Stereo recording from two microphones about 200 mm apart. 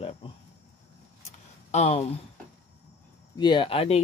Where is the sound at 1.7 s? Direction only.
35° left (ahead or behind).